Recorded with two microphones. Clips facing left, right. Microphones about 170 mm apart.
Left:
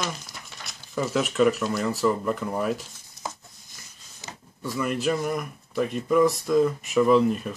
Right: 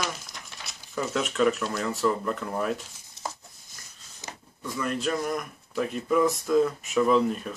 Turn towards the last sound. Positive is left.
turn(degrees=5)  # may be behind; listen again after turning